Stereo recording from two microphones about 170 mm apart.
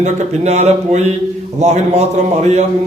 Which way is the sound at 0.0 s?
40° right (ahead or behind).